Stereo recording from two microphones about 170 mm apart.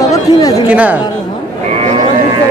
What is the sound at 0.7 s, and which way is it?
Speech, 10° right (ahead or behind).